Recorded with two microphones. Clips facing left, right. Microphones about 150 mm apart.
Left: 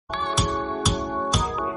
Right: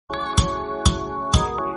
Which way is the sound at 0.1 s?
Centre (ahead or behind).